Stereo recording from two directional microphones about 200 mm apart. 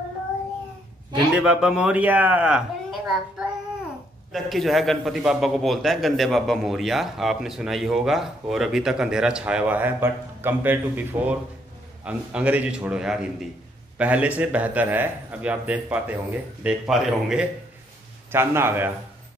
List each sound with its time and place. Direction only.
1.3 s a man's voice: 5° right (ahead or behind)